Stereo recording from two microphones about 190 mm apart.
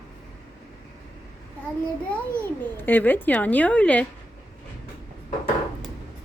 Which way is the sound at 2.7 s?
10° left (ahead or behind).